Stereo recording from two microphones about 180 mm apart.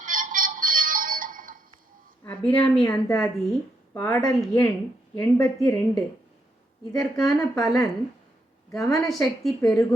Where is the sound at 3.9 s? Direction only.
15° left (ahead or behind).